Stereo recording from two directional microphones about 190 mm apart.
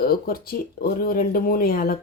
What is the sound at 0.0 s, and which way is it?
A woman's voice, 50° left (ahead or behind).